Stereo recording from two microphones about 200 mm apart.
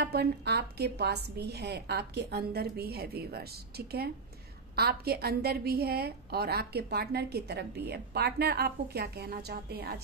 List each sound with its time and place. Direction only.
0.0 s a woman's voice: 55° right (ahead or behind)